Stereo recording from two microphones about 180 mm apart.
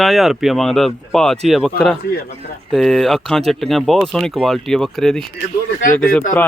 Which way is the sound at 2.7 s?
Centre (ahead or behind).